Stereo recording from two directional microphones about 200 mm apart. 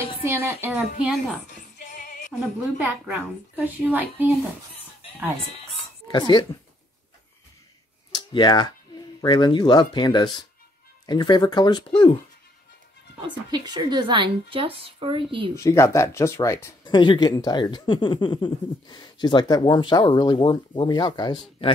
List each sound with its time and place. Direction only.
0.2 s a woman's voice: 10° right (ahead or behind)
1.5 s music: 40° left (ahead or behind)
2.8 s a woman's voice: 10° right (ahead or behind)
6.1 s speech: 20° left (ahead or behind)
8.1 s speech: 20° left (ahead or behind)
13.2 s a woman's voice: 20° right (ahead or behind)
15.5 s speech: 15° left (ahead or behind)